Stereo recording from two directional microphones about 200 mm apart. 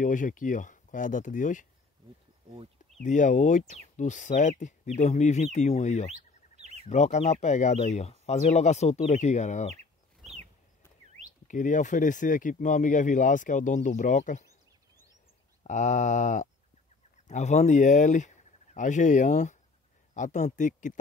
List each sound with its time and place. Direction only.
0.0 s speech: 40° left (ahead or behind)
3.0 s speech: 40° left (ahead or behind)
6.5 s a sound: 35° right (ahead or behind)
6.9 s speech: 35° left (ahead or behind)
11.4 s speech: 40° left (ahead or behind)
15.6 s speech: 40° left (ahead or behind)